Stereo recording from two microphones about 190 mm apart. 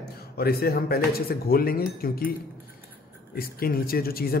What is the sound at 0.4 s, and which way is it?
Speech, 55° left (ahead or behind).